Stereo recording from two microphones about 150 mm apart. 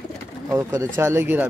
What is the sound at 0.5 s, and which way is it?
Speech, 20° right (ahead or behind).